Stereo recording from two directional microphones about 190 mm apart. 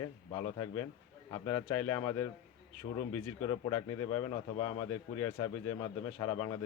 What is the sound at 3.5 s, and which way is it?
A man's voice, 20° left (ahead or behind).